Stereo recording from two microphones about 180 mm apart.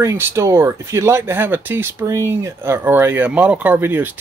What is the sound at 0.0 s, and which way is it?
Speech, 15° right (ahead or behind).